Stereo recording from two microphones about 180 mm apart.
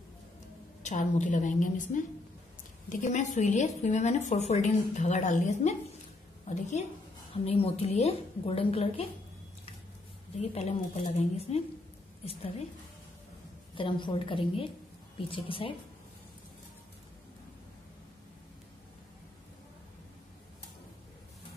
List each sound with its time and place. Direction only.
0.8 s a woman's voice: 40° left (ahead or behind)
10.4 s speech: 35° left (ahead or behind)
13.7 s a woman's voice: 25° left (ahead or behind)